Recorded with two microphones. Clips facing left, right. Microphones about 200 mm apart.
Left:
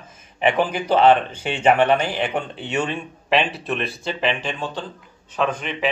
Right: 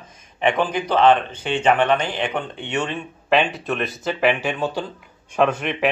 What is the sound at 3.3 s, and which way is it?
Speech, 35° left (ahead or behind).